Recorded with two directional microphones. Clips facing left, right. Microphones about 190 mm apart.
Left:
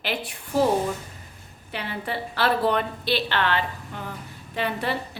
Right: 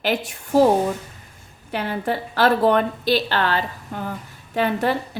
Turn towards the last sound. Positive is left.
turn(degrees=-45)  # may be behind; listen again after turning